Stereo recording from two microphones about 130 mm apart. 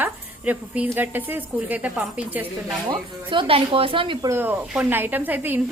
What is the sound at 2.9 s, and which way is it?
A woman's voice, 40° right (ahead or behind).